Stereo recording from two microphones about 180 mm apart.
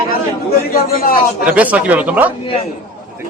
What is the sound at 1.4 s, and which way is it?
Speech, 5° right (ahead or behind).